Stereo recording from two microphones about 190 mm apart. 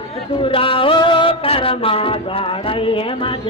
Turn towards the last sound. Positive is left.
turn(degrees=30)  # may be behind; listen again after turning